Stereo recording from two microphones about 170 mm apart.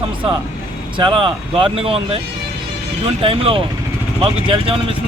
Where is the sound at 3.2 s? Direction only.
35° right (ahead or behind).